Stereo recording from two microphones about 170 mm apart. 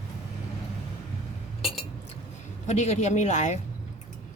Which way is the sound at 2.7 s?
45° left (ahead or behind).